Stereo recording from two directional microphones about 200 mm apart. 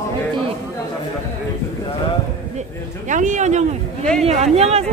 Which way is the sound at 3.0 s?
40° right (ahead or behind).